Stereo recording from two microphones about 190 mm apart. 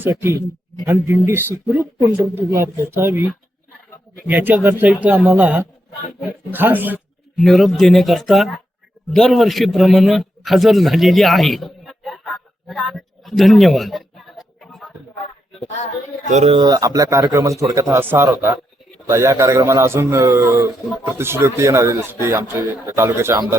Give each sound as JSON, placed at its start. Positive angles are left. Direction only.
{"t": 0.0, "sound": "speech", "side_deg": -10}
{"t": 4.3, "sound": "a man's voice", "side_deg": -10}
{"t": 15.6, "sound": "a woman's voice", "side_deg": 35}
{"t": 16.3, "sound": "speech", "side_deg": -30}